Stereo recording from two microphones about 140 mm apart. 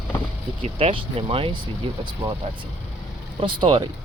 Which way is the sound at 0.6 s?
40° right (ahead or behind).